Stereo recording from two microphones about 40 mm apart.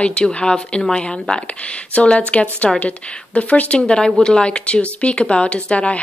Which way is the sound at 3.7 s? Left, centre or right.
Left.